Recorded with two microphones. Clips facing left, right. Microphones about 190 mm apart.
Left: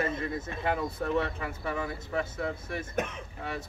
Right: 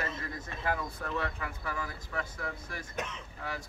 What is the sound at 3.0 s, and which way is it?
Speech, 55° left (ahead or behind).